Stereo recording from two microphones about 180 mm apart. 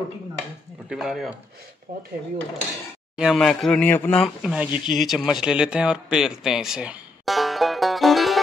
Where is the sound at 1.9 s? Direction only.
55° right (ahead or behind).